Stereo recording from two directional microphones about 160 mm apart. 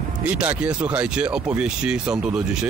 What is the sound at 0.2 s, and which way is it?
Speech, 10° right (ahead or behind).